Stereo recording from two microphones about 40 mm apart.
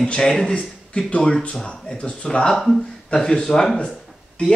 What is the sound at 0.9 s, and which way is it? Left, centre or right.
Speech, left.